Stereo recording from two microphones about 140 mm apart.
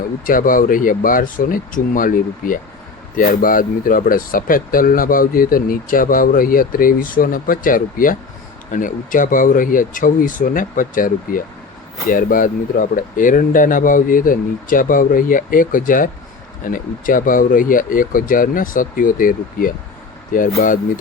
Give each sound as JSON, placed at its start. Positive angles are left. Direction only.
{"t": 0.3, "sound": "speech", "side_deg": 75}